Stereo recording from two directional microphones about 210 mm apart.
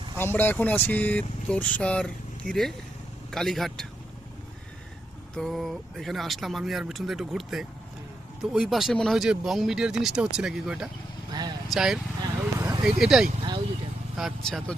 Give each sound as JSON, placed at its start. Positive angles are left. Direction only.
{"t": 0.2, "sound": "speech", "side_deg": 10}
{"t": 5.4, "sound": "speech", "side_deg": 0}
{"t": 11.3, "sound": "vehicle", "side_deg": -20}
{"t": 11.7, "sound": "speech", "side_deg": 0}
{"t": 12.2, "sound": "vehicle", "side_deg": -15}
{"t": 13.0, "sound": "speech", "side_deg": 0}